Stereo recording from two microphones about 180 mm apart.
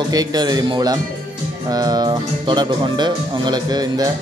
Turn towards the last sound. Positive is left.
turn(degrees=-20)  # may be behind; listen again after turning